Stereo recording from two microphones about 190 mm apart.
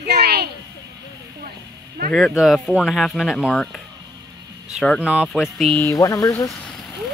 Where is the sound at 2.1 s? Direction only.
Centre (ahead or behind).